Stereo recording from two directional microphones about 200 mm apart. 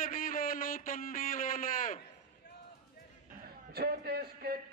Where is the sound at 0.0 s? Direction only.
45° left (ahead or behind).